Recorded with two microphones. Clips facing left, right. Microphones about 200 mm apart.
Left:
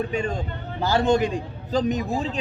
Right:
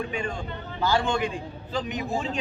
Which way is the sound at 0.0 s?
40° left (ahead or behind).